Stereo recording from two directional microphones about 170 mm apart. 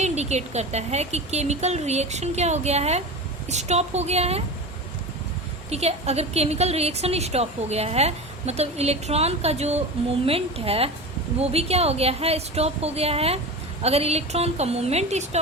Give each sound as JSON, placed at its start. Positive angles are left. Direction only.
{"t": 0.0, "sound": "a woman's voice", "side_deg": -40}
{"t": 5.7, "sound": "a woman's voice", "side_deg": -40}